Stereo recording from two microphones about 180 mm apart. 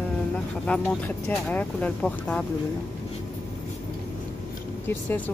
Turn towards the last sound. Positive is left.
turn(degrees=10)  # may be behind; listen again after turning